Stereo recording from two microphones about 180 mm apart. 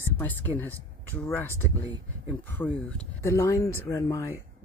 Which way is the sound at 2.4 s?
10° left (ahead or behind).